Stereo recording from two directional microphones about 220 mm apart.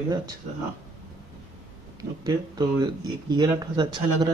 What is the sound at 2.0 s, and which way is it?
Speech, 15° right (ahead or behind).